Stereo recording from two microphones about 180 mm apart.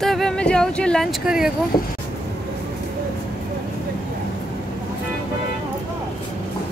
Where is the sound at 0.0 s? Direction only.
Centre (ahead or behind).